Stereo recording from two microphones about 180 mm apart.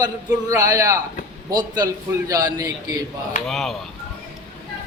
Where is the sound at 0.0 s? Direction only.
20° right (ahead or behind).